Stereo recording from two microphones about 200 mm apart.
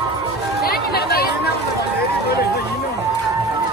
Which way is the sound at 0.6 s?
50° left (ahead or behind).